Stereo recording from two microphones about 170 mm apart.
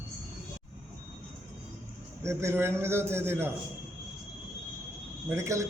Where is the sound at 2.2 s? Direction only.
15° right (ahead or behind).